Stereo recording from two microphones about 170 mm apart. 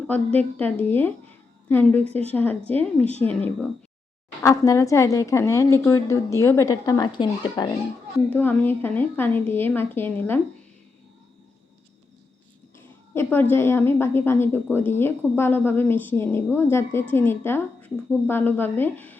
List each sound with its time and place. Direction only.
0.9 s a woman's voice: 10° left (ahead or behind)
8.3 s a woman's voice: 10° left (ahead or behind)
13.1 s a woman's voice: 10° left (ahead or behind)